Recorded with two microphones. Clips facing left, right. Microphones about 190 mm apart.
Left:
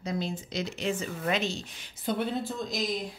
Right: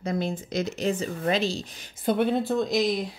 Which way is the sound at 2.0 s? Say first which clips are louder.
Right 7 dB; 60° right (ahead or behind).